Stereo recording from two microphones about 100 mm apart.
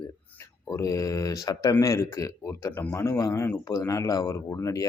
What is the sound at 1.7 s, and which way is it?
Speech, 25° left (ahead or behind).